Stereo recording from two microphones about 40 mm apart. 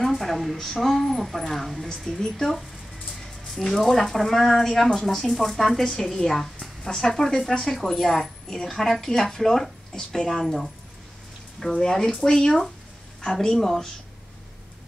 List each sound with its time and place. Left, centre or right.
0.1 s a woman's voice: centre
6.8 s a woman's voice: centre